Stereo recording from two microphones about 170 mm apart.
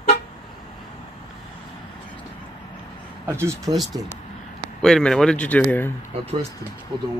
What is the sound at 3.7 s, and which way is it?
Speech, centre (ahead or behind).